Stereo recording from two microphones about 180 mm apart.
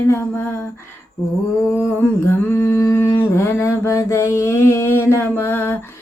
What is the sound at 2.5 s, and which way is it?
Mantra, 15° left (ahead or behind).